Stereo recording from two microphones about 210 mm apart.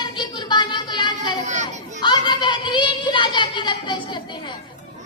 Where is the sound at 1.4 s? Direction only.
35° right (ahead or behind).